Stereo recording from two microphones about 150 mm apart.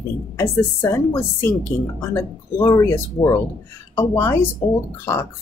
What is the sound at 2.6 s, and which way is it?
Speech, 20° left (ahead or behind).